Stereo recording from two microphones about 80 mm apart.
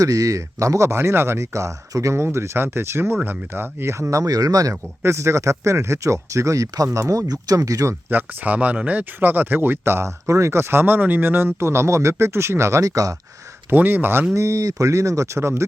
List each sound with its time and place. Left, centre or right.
0.0 s speech: right
4.7 s speech: right
8.1 s speech: right
13.7 s speech: right
14.3 s speech: right